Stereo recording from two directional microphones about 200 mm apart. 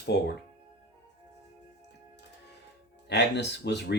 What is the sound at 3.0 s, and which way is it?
Speech, 60° left (ahead or behind).